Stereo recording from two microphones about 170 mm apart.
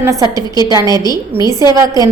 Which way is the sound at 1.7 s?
20° right (ahead or behind).